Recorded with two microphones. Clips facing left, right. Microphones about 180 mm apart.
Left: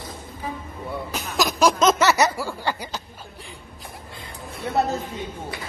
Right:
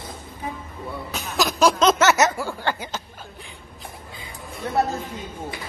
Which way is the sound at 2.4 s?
Centre (ahead or behind).